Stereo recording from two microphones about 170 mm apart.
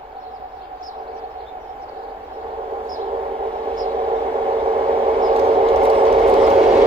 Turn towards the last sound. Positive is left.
turn(degrees=-35)  # may be behind; listen again after turning